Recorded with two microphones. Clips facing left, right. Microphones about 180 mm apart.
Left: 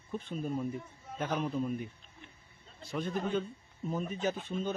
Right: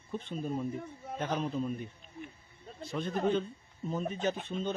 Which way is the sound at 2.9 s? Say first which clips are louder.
Right 2 dB; 10° left (ahead or behind).